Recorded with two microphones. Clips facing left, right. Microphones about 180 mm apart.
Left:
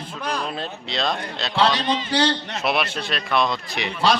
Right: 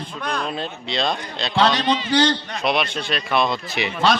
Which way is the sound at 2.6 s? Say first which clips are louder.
Right 1 dB; 5° left (ahead or behind).